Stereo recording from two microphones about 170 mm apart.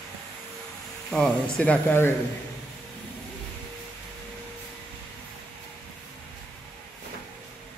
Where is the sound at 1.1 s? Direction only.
5° left (ahead or behind).